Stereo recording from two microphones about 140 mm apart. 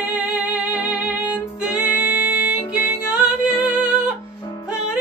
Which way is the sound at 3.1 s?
5° right (ahead or behind).